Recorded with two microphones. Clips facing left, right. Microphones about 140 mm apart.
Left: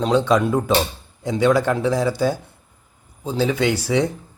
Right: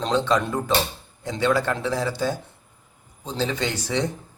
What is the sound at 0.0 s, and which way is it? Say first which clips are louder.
A man's voice: left 5 dB; 10° left (ahead or behind).